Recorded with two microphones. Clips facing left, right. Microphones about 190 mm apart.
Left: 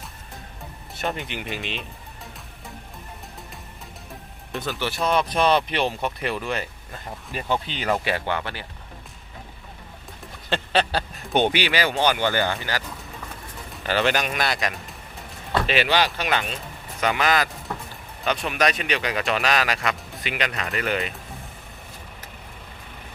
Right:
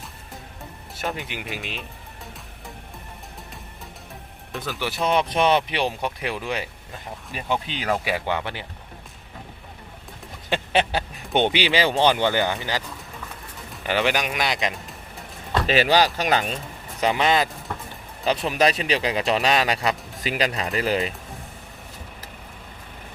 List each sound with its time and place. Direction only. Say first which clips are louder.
0.9 s speech: left 1 dB; centre (ahead or behind)
4.5 s speech: left 2 dB; centre (ahead or behind)
4.8 s speech: right 1 dB; 15° right (ahead or behind)
8.3 s speech: right 1 dB; 15° right (ahead or behind)
10.5 s a sound: right 1 dB; 15° right (ahead or behind)
11.6 s speech: right 2 dB; 25° right (ahead or behind)
13.8 s speech: even; 15° right (ahead or behind)
15.6 s speech: right 4 dB; 40° right (ahead or behind)
17.0 s speech: right 2 dB; 30° right (ahead or behind)